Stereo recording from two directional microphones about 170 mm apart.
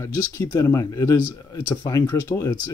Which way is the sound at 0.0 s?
20° left (ahead or behind).